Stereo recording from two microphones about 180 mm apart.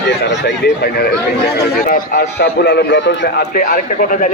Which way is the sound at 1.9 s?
45° left (ahead or behind).